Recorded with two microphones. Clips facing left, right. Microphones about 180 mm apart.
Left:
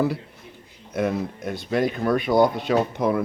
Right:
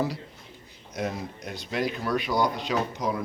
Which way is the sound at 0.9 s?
55° left (ahead or behind).